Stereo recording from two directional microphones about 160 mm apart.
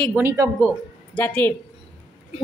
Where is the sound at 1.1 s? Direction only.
10° left (ahead or behind).